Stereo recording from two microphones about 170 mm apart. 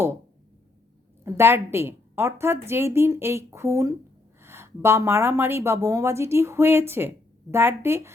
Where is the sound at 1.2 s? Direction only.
15° right (ahead or behind).